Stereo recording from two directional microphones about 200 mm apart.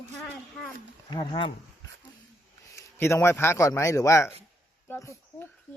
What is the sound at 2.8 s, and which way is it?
A man's voice, 15° left (ahead or behind).